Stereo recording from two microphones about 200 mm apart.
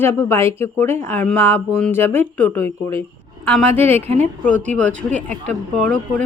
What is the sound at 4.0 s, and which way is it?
Speech, 30° right (ahead or behind).